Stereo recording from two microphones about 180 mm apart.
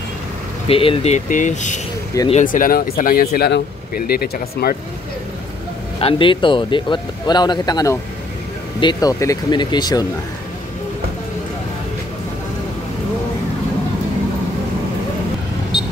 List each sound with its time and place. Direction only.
0.7 s speech: 30° left (ahead or behind); by 4.7 s 60° left (ahead or behind)
5.9 s speech: 30° left (ahead or behind)